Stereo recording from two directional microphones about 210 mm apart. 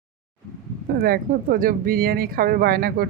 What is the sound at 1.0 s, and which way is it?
Speech, 45° right (ahead or behind).